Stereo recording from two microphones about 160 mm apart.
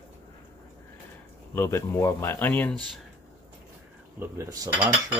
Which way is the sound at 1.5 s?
15° left (ahead or behind).